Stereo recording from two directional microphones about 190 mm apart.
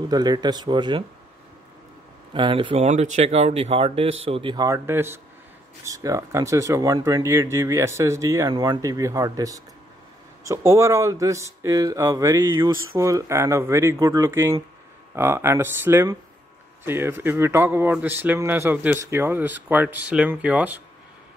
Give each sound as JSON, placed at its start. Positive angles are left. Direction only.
{"t": 0.1, "sound": "speech", "side_deg": -20}
{"t": 2.3, "sound": "speech", "side_deg": -25}